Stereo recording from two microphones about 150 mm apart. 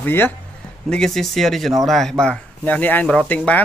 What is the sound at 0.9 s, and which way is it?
Speech, 5° left (ahead or behind).